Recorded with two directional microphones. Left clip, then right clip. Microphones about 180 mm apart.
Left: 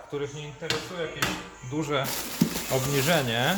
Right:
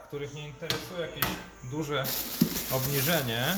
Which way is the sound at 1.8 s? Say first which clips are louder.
Left 3 dB; 30° left (ahead or behind).